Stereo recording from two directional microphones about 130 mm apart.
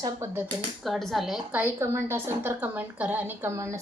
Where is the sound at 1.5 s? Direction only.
15° right (ahead or behind).